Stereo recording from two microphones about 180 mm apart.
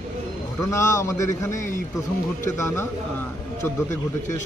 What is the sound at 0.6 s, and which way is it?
A man's voice, 15° left (ahead or behind).